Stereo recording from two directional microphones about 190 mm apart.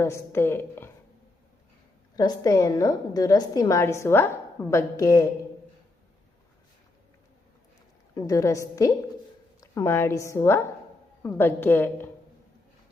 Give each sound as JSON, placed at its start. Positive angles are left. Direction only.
{"t": 0.0, "sound": "a woman's voice", "side_deg": 15}
{"t": 2.1, "sound": "a woman's voice", "side_deg": 20}
{"t": 8.1, "sound": "a woman's voice", "side_deg": 15}